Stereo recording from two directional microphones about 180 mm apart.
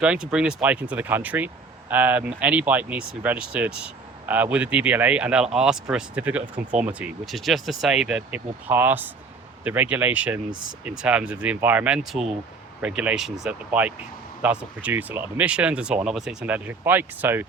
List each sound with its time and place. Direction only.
0.0 s speech: 5° right (ahead or behind)